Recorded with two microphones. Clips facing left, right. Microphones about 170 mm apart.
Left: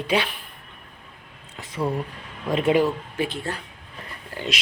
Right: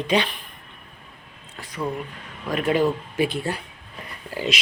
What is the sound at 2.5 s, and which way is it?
Speech, 25° left (ahead or behind).